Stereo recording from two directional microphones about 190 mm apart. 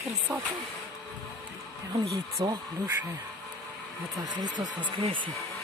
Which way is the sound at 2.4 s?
15° right (ahead or behind).